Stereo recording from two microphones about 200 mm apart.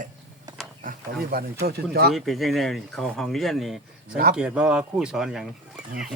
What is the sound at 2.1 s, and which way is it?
Speech, centre (ahead or behind).